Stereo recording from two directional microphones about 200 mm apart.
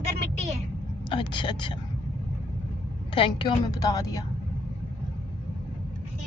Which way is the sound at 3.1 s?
25° left (ahead or behind).